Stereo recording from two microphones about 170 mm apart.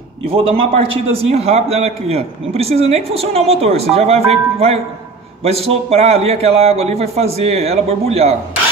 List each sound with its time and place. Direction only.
0.3 s a man's voice: 35° right (ahead or behind)